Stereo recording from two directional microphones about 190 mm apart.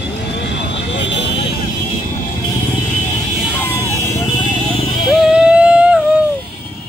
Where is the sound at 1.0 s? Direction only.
65° left (ahead or behind).